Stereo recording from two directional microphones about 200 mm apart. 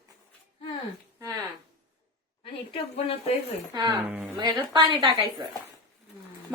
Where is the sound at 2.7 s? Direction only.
30° left (ahead or behind).